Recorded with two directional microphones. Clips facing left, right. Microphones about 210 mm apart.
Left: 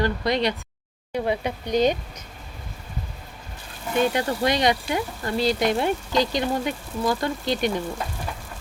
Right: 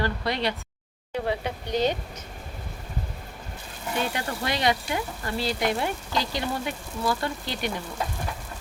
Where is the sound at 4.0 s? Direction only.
20° left (ahead or behind).